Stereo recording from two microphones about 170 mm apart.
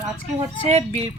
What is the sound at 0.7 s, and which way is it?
Speech, 35° right (ahead or behind).